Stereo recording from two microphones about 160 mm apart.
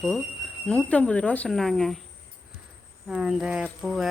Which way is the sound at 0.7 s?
10° left (ahead or behind).